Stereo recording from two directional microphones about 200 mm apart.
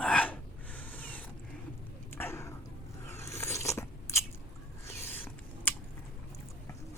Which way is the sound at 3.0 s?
15° left (ahead or behind).